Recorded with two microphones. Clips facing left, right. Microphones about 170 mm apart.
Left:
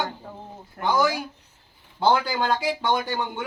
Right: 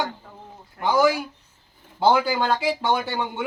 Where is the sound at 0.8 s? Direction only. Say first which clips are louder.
Right 1 dB; 45° left (ahead or behind).